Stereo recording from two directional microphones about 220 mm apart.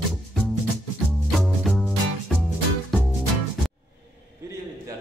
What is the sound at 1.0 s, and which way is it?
Music, centre (ahead or behind).